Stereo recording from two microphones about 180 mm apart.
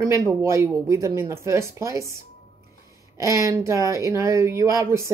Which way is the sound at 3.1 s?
15° right (ahead or behind).